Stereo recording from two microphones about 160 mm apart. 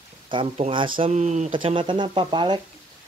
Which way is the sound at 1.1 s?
45° right (ahead or behind).